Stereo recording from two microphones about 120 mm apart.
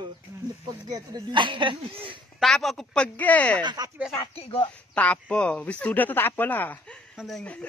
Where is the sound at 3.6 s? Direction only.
40° right (ahead or behind).